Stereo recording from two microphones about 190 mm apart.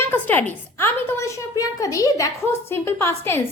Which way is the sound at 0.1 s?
10° left (ahead or behind).